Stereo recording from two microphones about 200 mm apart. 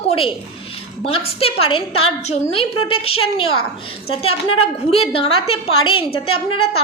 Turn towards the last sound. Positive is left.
turn(degrees=25)  # may be behind; listen again after turning